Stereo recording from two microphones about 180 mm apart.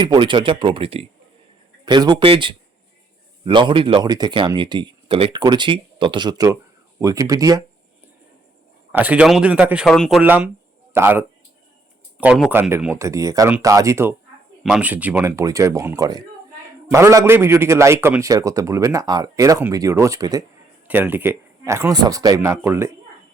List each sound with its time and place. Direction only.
0.0 s speech: 25° right (ahead or behind)
8.9 s a man's voice: 10° right (ahead or behind)
10.2 s a man's voice: 10° right (ahead or behind)